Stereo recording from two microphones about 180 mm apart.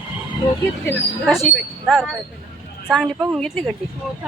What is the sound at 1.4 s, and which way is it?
Speech, centre (ahead or behind).